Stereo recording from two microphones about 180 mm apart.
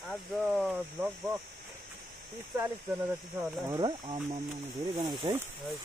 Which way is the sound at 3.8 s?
30° right (ahead or behind).